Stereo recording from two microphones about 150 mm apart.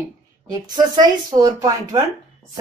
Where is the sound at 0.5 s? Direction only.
25° right (ahead or behind).